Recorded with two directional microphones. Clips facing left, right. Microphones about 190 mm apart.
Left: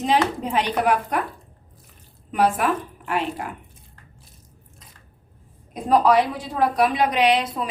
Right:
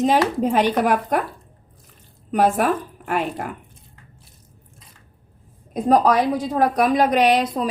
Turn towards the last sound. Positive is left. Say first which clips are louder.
# right 2 dB
turn(degrees=-40)  # may be behind; listen again after turning